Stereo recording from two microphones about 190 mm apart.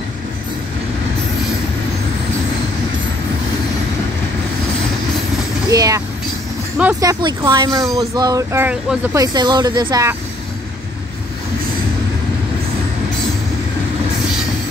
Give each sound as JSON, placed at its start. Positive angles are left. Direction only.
{"t": 5.7, "sound": "train", "side_deg": -20}
{"t": 7.0, "sound": "speech", "side_deg": -20}
{"t": 9.2, "sound": "speech", "side_deg": -20}